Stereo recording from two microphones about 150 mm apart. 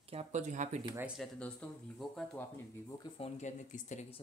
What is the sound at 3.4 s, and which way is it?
Speech, 55° left (ahead or behind).